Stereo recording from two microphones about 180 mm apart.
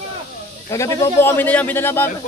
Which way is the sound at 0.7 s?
15° left (ahead or behind).